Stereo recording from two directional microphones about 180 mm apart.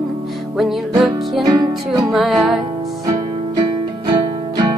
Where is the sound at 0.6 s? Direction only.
Centre (ahead or behind).